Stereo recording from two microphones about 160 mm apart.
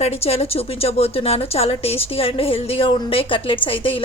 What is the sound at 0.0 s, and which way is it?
A woman's voice, 40° left (ahead or behind).